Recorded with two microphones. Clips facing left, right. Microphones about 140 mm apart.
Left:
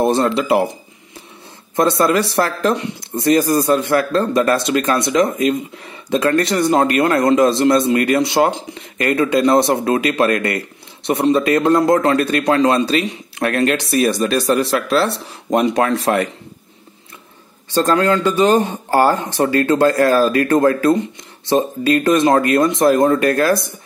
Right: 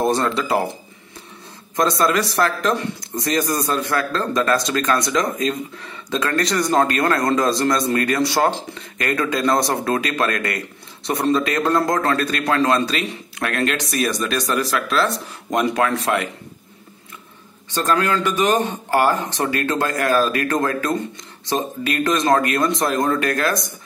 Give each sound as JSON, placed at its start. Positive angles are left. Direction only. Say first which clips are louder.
{"t": 0.1, "sound": "a man's voice", "louder": "left 4 dB", "side_deg": 25}
{"t": 1.8, "sound": "a man's voice", "louder": "left 4 dB", "side_deg": 25}
{"t": 17.7, "sound": "a man's voice", "louder": "left 5 dB", "side_deg": 30}